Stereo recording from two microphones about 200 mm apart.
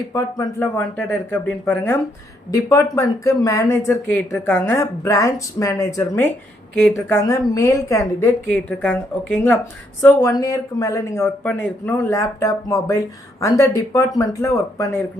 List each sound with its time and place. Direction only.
0.1 s speech: 15° left (ahead or behind)